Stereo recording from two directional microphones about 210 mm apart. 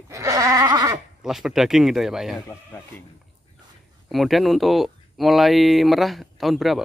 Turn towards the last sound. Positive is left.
turn(degrees=0)  # may be behind; listen again after turning